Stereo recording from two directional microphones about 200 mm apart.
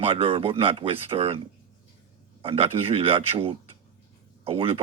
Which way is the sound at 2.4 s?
30° right (ahead or behind).